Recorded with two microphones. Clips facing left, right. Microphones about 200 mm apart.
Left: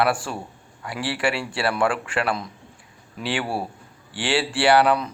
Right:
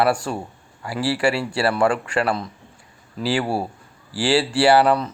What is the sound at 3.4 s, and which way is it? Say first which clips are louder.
Speech: right 4 dB; 25° right (ahead or behind).